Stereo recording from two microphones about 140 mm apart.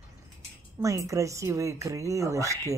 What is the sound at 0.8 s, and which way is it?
A woman's voice, 25° right (ahead or behind).